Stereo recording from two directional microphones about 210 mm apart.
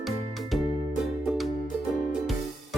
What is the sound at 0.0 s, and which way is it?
Music, centre (ahead or behind).